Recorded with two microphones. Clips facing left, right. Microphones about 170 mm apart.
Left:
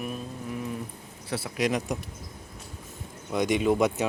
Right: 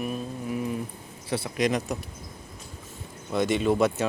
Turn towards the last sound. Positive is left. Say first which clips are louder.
# even
turn(degrees=15)  # may be behind; listen again after turning